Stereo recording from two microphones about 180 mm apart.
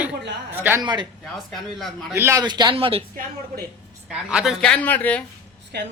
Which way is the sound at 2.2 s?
15° right (ahead or behind).